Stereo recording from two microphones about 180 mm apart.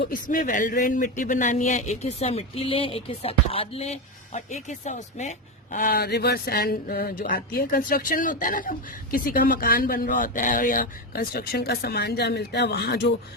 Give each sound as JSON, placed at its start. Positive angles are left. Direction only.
{"t": 0.1, "sound": "speech", "side_deg": 50}
{"t": 5.7, "sound": "speech", "side_deg": 55}